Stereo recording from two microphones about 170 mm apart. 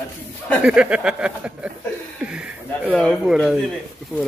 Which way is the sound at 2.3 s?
5° right (ahead or behind).